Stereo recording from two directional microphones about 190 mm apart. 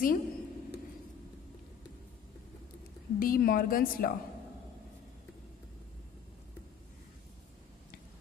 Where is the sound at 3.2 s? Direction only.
50° left (ahead or behind).